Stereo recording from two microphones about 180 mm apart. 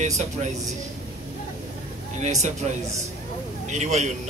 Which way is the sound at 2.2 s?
40° right (ahead or behind).